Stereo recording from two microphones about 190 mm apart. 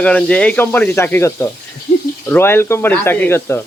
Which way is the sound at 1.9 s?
40° left (ahead or behind).